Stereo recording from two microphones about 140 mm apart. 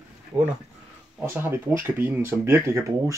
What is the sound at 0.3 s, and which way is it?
Speech, 10° right (ahead or behind).